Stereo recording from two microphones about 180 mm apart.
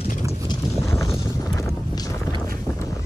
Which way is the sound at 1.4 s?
15° left (ahead or behind).